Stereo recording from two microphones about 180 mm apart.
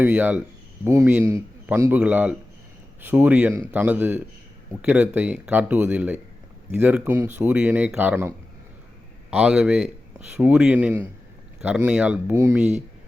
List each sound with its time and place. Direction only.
0.0 s speech: 10° right (ahead or behind)
7.0 s speech: 15° right (ahead or behind)
9.3 s speech: 5° right (ahead or behind)